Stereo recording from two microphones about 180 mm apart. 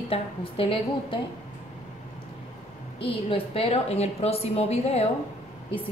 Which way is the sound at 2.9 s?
30° left (ahead or behind).